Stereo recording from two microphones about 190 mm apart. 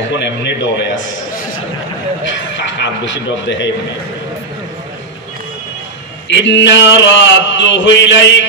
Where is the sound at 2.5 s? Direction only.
70° left (ahead or behind).